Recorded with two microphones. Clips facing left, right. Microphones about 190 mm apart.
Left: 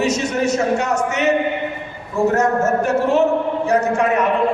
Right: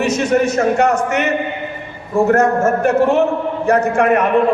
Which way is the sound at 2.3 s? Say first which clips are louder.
Right 2 dB; 55° right (ahead or behind).